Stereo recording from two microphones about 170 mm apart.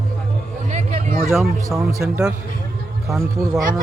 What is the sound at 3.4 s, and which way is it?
Speech, 20° right (ahead or behind).